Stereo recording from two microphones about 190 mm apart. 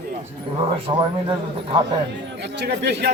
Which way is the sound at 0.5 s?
25° right (ahead or behind).